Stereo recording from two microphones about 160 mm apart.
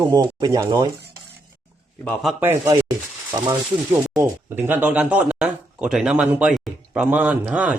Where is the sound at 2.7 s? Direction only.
25° right (ahead or behind).